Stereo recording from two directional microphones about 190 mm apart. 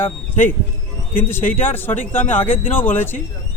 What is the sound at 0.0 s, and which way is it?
Speech, 10° left (ahead or behind).